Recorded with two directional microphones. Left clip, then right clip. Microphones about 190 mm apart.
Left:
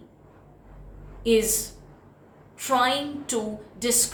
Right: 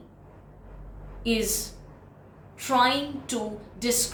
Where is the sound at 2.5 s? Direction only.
20° left (ahead or behind).